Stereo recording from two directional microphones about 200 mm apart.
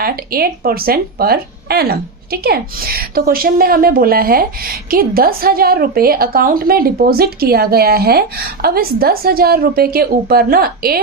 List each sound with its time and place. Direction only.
0.0 s speech: 50° right (ahead or behind)